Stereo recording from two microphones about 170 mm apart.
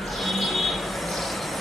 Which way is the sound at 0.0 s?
Centre (ahead or behind).